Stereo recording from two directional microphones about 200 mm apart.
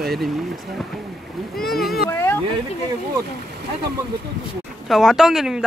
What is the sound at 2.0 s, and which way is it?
Speech, 10° left (ahead or behind).